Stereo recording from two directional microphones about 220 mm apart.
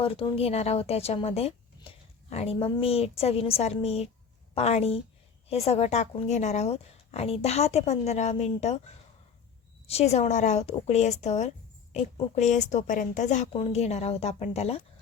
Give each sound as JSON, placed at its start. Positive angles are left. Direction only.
{"t": 0.0, "sound": "a woman's voice", "side_deg": 25}